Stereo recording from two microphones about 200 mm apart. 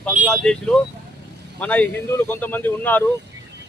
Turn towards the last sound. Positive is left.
turn(degrees=10)  # may be behind; listen again after turning